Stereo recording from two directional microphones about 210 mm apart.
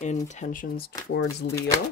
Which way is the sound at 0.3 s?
35° left (ahead or behind).